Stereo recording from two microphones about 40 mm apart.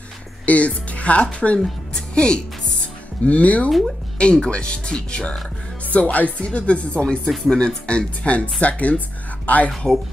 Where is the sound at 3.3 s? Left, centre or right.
Left.